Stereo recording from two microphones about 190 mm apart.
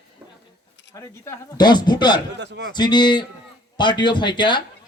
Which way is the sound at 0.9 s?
15° left (ahead or behind).